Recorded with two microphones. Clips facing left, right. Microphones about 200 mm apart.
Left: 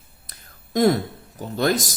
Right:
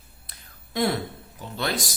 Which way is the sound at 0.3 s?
45° left (ahead or behind).